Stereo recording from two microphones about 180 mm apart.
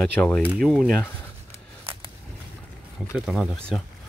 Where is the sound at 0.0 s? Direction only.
5° left (ahead or behind).